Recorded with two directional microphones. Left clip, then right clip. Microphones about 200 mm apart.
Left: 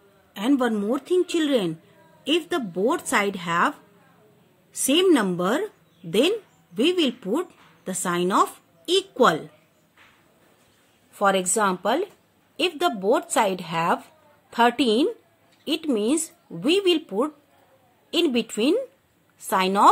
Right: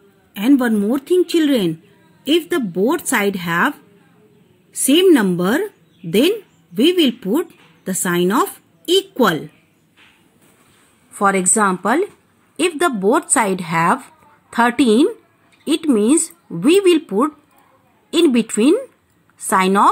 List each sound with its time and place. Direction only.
0.3 s speech: 15° right (ahead or behind)
4.8 s a woman's voice: 15° right (ahead or behind)
11.1 s speech: 20° right (ahead or behind)